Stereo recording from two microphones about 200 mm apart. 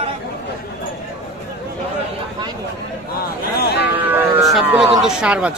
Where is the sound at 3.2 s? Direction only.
50° left (ahead or behind).